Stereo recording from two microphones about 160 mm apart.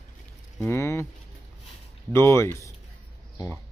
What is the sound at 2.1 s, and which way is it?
Speech, 15° left (ahead or behind).